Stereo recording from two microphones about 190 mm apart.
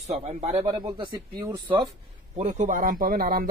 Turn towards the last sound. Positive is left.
turn(degrees=-50)  # may be behind; listen again after turning